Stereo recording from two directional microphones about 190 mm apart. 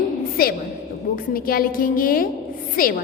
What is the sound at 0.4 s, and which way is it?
A woman's voice, 50° left (ahead or behind).